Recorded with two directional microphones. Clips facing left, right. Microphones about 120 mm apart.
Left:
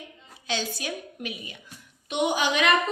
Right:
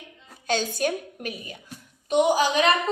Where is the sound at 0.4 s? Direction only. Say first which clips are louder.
Right 6 dB; 45° right (ahead or behind).